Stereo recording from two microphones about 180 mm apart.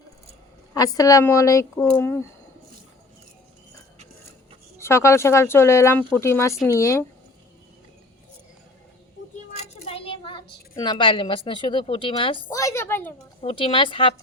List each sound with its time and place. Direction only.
0.7 s speech: 20° left (ahead or behind)
4.8 s speech: 15° left (ahead or behind)
9.8 s a sound: 30° left (ahead or behind)
10.8 s a woman's voice: 25° left (ahead or behind)
12.5 s speech: 15° left (ahead or behind)
13.4 s a woman's voice: 30° left (ahead or behind)